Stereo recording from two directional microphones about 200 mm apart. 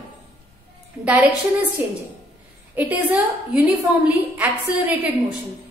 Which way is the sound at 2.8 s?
10° right (ahead or behind).